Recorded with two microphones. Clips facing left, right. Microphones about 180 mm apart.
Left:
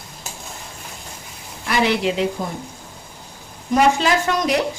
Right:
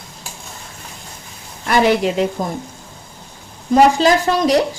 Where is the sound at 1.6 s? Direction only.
45° right (ahead or behind).